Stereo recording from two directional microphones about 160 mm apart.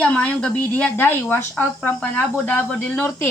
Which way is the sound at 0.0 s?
5° left (ahead or behind).